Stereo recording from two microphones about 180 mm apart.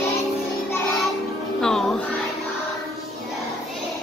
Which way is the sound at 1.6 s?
5° left (ahead or behind).